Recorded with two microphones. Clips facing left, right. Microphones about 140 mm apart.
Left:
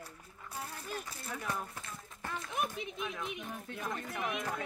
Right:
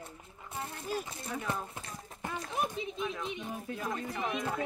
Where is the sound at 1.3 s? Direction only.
20° right (ahead or behind).